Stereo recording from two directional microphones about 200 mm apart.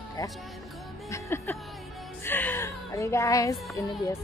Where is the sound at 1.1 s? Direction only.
15° left (ahead or behind).